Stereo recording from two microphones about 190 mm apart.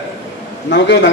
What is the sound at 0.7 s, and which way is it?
Speech, 65° left (ahead or behind).